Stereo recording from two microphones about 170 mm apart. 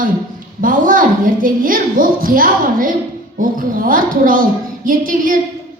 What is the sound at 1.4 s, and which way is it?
A woman's voice, 55° right (ahead or behind).